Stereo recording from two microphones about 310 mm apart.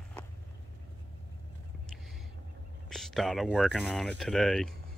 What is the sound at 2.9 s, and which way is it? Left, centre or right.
Speech, centre.